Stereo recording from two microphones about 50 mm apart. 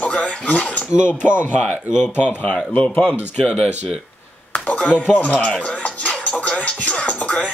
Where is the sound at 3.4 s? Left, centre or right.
Centre.